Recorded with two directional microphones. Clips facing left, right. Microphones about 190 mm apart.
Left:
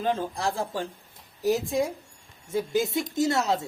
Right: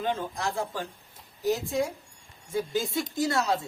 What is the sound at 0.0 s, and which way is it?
Speech, 30° left (ahead or behind).